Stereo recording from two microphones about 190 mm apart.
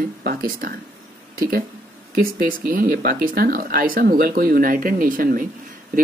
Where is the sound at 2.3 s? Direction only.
50° right (ahead or behind).